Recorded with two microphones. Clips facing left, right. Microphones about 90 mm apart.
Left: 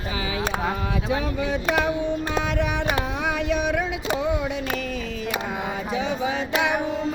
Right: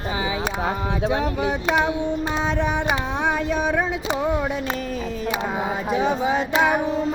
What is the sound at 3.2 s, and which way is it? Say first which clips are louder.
Carnatic music: right 2 dB; 35° right (ahead or behind).